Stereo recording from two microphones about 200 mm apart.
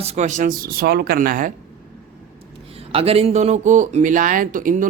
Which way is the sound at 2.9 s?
30° right (ahead or behind).